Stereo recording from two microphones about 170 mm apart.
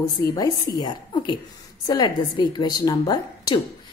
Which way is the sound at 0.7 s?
25° left (ahead or behind).